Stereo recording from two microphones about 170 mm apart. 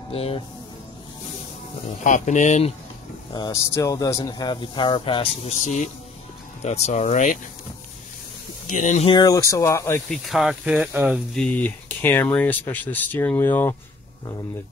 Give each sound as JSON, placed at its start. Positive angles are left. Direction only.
{"t": 0.1, "sound": "speech", "side_deg": 35}
{"t": 1.9, "sound": "speech", "side_deg": 45}
{"t": 3.3, "sound": "speech", "side_deg": 20}
{"t": 8.7, "sound": "speech", "side_deg": 45}
{"t": 9.1, "sound": "speech", "side_deg": 20}
{"t": 10.0, "sound": "speech", "side_deg": 0}
{"t": 11.3, "sound": "speech", "side_deg": 10}